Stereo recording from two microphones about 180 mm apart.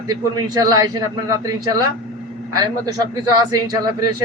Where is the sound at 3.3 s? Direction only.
20° right (ahead or behind).